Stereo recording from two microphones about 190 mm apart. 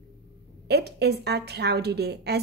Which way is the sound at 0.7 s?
60° right (ahead or behind).